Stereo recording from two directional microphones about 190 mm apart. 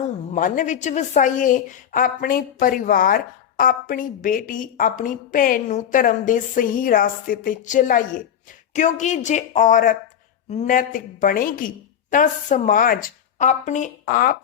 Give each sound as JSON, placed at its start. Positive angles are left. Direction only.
{"t": 0.3, "sound": "a woman's voice", "side_deg": 45}